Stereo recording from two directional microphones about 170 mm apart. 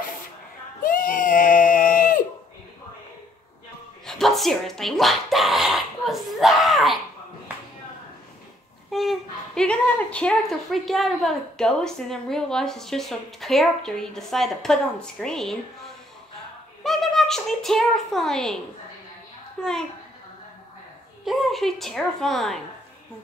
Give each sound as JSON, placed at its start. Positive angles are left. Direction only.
{"t": 0.8, "sound": "baby cry", "side_deg": 55}
{"t": 4.0, "sound": "speech", "side_deg": 0}
{"t": 8.9, "sound": "a woman's voice", "side_deg": 0}
{"t": 16.8, "sound": "a woman's voice", "side_deg": 0}
{"t": 19.6, "sound": "a woman's voice", "side_deg": 5}
{"t": 21.3, "sound": "a woman's voice", "side_deg": 0}